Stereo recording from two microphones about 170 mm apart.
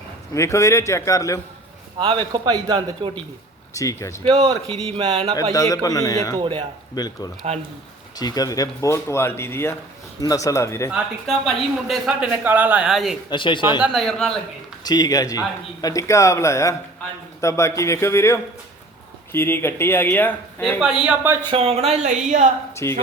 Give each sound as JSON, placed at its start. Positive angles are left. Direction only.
{"t": 0.3, "sound": "speech", "side_deg": 15}
{"t": 2.0, "sound": "a man's voice", "side_deg": -25}
{"t": 3.8, "sound": "speech", "side_deg": 20}
{"t": 4.2, "sound": "speech", "side_deg": -35}
{"t": 5.5, "sound": "speech", "side_deg": 20}
{"t": 6.3, "sound": "speech", "side_deg": -35}
{"t": 6.9, "sound": "speech", "side_deg": 25}
{"t": 10.9, "sound": "speech", "side_deg": 0}
{"t": 13.3, "sound": "speech", "side_deg": 30}
{"t": 13.8, "sound": "speech", "side_deg": 0}
{"t": 14.8, "sound": "speech", "side_deg": 20}
{"t": 21.5, "sound": "speech", "side_deg": -35}
{"t": 22.7, "sound": "speech", "side_deg": 15}